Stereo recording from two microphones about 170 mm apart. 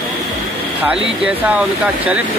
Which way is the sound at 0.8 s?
10° right (ahead or behind).